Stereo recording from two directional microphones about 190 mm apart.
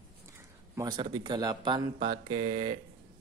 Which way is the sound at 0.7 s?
20° right (ahead or behind).